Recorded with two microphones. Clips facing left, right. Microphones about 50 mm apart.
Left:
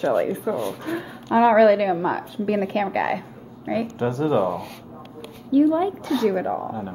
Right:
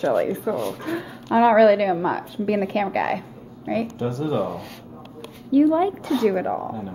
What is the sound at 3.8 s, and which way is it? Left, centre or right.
Speech, left.